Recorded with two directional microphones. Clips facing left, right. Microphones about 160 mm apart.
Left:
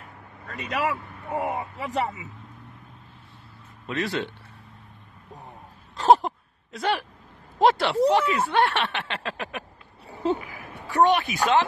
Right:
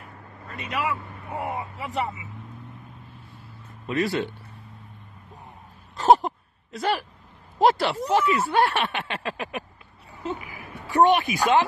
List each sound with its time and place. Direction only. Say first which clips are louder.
0.6 s a man's voice: left 1 dB; 40° left (ahead or behind)
3.8 s speech: right 3 dB; 5° right (ahead or behind)
5.9 s a sound: even; centre (ahead or behind)
7.5 s speech: even; centre (ahead or behind)
10.0 s a sound: left 7 dB; 30° left (ahead or behind)
10.4 s speech: even; 10° right (ahead or behind)